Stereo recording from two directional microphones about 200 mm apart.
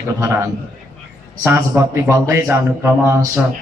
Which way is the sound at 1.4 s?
10° right (ahead or behind).